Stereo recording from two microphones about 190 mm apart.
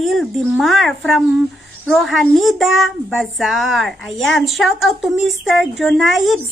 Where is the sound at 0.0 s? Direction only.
Centre (ahead or behind).